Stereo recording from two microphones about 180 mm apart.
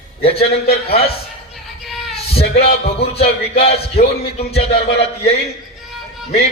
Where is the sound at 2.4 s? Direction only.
35° left (ahead or behind).